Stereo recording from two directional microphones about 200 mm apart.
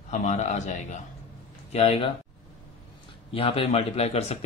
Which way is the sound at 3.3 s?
30° left (ahead or behind).